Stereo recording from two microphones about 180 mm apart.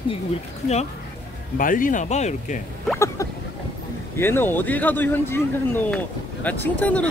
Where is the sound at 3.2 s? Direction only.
20° left (ahead or behind).